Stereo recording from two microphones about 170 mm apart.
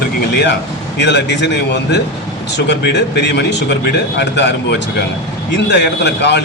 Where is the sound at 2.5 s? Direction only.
85° left.